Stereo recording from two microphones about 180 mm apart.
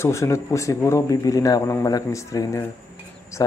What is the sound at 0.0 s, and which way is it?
Speech, 15° left (ahead or behind).